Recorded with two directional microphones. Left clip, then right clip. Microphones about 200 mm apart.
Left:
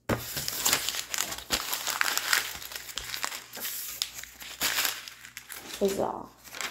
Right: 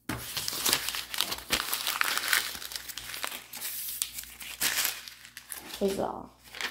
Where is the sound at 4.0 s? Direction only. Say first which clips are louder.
Left 3 dB; 25° right (ahead or behind).